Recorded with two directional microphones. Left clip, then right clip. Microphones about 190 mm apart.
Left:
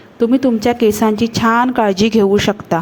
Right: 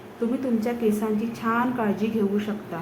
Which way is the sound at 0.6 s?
45° left (ahead or behind).